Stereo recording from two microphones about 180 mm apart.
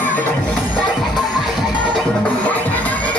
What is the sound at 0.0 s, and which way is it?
Music, 10° left (ahead or behind).